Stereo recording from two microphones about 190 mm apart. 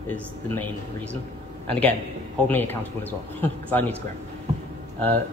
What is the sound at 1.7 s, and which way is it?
Speech, 5° left (ahead or behind).